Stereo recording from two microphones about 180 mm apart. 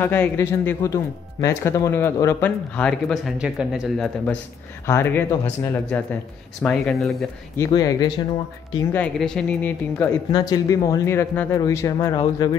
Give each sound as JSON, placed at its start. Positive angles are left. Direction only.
{"t": 0.0, "sound": "speech", "side_deg": 10}
{"t": 4.8, "sound": "speech", "side_deg": 15}
{"t": 7.5, "sound": "speech", "side_deg": 20}
{"t": 8.9, "sound": "speech", "side_deg": 5}
{"t": 10.3, "sound": "speech", "side_deg": 20}